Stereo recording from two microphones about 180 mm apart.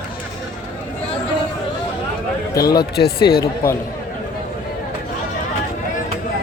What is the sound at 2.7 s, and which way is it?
Speech, 60° left (ahead or behind).